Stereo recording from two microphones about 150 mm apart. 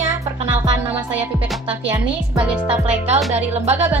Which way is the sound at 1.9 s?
10° right (ahead or behind).